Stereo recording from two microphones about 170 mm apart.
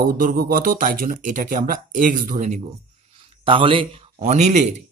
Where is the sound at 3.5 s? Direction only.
30° right (ahead or behind).